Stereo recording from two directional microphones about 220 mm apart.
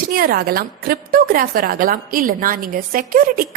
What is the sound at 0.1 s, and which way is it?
A woman's voice, 40° right (ahead or behind).